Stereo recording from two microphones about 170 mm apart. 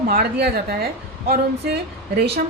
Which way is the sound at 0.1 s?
70° right (ahead or behind).